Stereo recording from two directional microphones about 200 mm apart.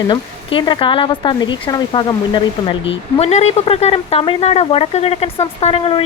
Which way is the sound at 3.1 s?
30° left (ahead or behind).